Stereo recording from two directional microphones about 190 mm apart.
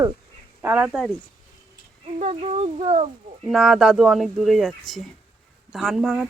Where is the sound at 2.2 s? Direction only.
35° right (ahead or behind).